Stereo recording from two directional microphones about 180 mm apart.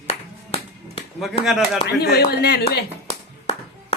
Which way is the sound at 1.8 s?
60° left (ahead or behind).